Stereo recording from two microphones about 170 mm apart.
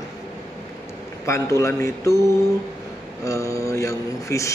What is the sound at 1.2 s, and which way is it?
Speech, 15° left (ahead or behind).